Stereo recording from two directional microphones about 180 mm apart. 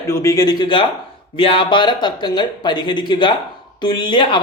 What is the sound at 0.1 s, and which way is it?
Speech, 15° left (ahead or behind).